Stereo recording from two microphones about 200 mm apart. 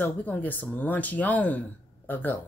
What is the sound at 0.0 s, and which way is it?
A woman's voice, 10° left (ahead or behind).